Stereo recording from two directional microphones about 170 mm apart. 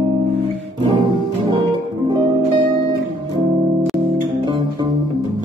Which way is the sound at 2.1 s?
25° right (ahead or behind).